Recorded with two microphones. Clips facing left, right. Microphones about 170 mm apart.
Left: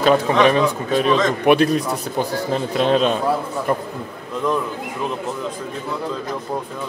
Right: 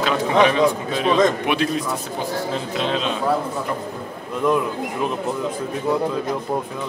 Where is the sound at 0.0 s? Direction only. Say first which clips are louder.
Left 3 dB; 45° left (ahead or behind).